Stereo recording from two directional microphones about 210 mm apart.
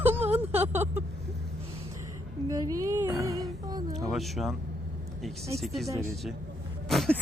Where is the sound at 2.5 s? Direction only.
15° right (ahead or behind).